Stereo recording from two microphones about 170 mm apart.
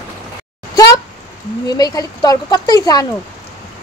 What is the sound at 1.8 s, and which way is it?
Speech, 20° left (ahead or behind).